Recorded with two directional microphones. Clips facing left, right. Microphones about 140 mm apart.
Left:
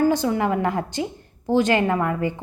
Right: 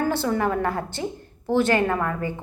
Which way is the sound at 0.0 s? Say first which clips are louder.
Left 3 dB; 15° left (ahead or behind).